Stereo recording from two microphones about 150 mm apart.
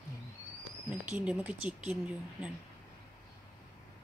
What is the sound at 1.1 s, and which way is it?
A woman's voice, 5° right (ahead or behind).